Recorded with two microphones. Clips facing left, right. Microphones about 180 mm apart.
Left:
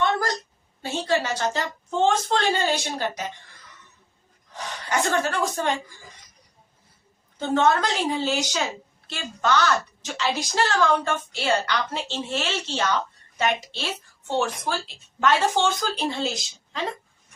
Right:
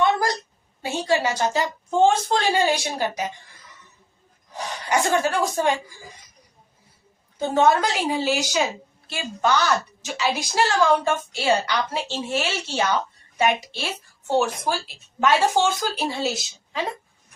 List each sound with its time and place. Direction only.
0.0 s a sound: 10° right (ahead or behind)
0.8 s a woman's voice: 10° right (ahead or behind)
4.5 s speech: 10° right (ahead or behind)
7.3 s a woman's voice: 10° right (ahead or behind)